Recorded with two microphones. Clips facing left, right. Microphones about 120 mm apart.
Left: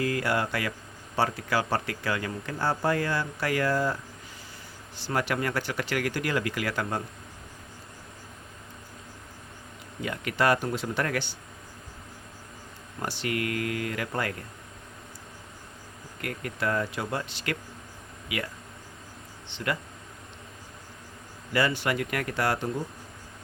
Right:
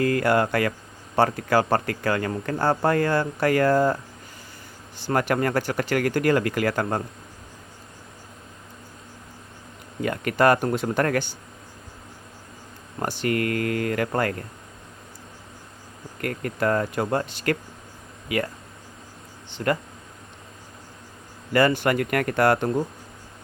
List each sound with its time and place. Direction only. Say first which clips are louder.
0.0 s a man's voice: right 7 dB; 50° right (ahead or behind)
4.9 s a man's voice: right 6 dB; 50° right (ahead or behind)
10.0 s a man's voice: right 6 dB; 50° right (ahead or behind)
13.0 s a man's voice: right 6 dB; 45° right (ahead or behind)
16.2 s a man's voice: right 6 dB; 45° right (ahead or behind)
19.5 s a man's voice: right 7 dB; 45° right (ahead or behind)
21.5 s a man's voice: right 6 dB; 50° right (ahead or behind)